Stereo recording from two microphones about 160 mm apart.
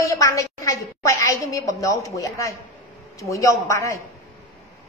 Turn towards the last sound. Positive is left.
turn(degrees=20)  # may be behind; listen again after turning